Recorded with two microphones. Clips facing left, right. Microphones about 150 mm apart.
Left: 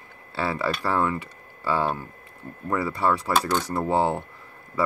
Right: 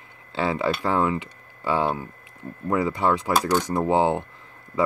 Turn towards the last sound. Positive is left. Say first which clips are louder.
# right 2 dB
turn(degrees=-10)  # may be behind; listen again after turning